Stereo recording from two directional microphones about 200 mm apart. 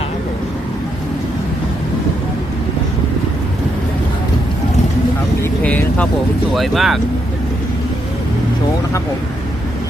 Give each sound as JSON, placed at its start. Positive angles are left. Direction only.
{"t": 5.4, "sound": "vehicle", "side_deg": 5}
{"t": 6.5, "sound": "speech", "side_deg": 0}